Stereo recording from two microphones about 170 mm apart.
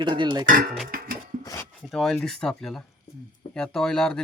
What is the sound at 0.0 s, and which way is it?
Speech, 25° right (ahead or behind).